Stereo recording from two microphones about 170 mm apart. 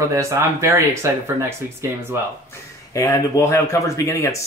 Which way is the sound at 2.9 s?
20° left (ahead or behind).